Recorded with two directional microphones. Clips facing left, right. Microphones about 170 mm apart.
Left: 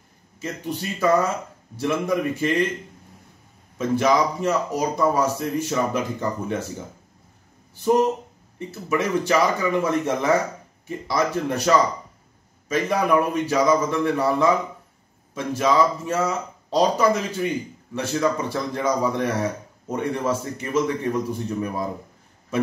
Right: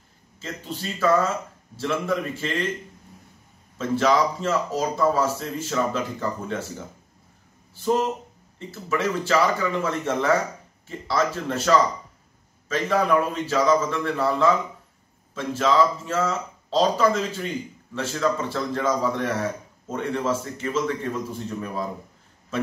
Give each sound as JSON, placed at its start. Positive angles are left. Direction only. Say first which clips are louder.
{"t": 0.4, "sound": "speech", "louder": "left 4 dB", "side_deg": 15}
{"t": 3.7, "sound": "speech", "louder": "left 1 dB", "side_deg": 15}
{"t": 7.7, "sound": "speech", "louder": "left 4 dB", "side_deg": 15}